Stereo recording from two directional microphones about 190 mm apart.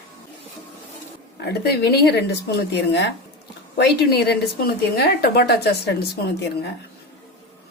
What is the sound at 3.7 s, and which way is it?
A woman's voice, 55° left (ahead or behind).